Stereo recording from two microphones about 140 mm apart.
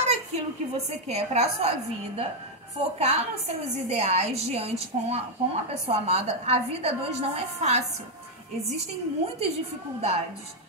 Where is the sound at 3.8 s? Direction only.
50° right (ahead or behind).